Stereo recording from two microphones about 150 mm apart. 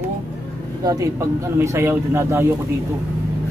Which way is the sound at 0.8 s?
25° right (ahead or behind).